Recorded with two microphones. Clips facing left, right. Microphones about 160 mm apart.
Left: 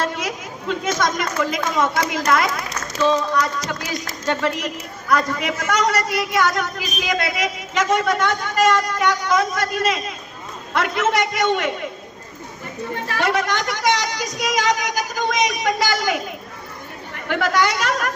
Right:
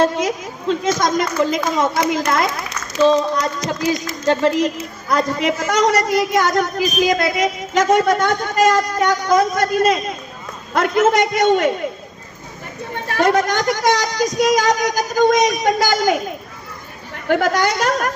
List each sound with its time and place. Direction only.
0.0 s a woman's voice: 35° right (ahead or behind)
13.1 s speech: 45° right (ahead or behind)
17.2 s speech: 45° right (ahead or behind)